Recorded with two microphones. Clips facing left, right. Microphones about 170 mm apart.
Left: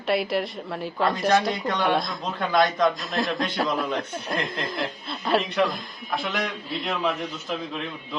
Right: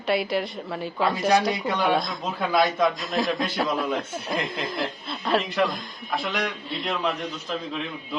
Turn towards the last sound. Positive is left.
turn(degrees=0)  # may be behind; listen again after turning